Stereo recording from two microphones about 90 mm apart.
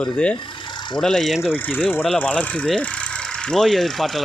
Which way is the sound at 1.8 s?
20° left (ahead or behind).